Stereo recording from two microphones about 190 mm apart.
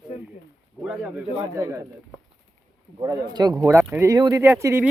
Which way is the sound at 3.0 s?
20° right (ahead or behind).